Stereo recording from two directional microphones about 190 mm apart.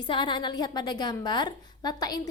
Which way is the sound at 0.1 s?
25° left (ahead or behind).